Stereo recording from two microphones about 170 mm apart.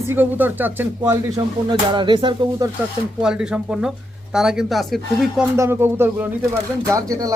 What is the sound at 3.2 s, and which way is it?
Speech, 5° right (ahead or behind).